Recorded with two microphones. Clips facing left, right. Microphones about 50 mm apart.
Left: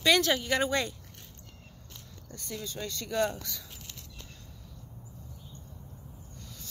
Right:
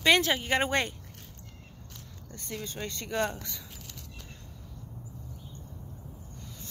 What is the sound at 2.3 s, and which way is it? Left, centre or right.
Speech, right.